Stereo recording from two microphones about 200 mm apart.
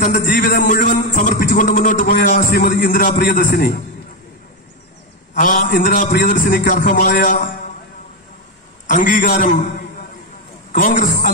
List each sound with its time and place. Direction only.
0.0 s music: 45° left (ahead or behind)
5.3 s a man's voice: 40° left (ahead or behind)
5.8 s music: 45° left (ahead or behind)
8.8 s a man's voice: 40° left (ahead or behind)
10.7 s music: 40° left (ahead or behind)